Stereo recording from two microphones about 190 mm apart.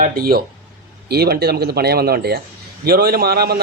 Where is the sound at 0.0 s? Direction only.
50° right (ahead or behind).